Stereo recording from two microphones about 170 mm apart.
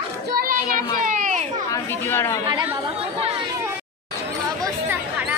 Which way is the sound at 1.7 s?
15° left (ahead or behind).